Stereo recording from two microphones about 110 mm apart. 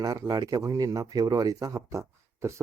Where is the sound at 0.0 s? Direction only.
35° right (ahead or behind).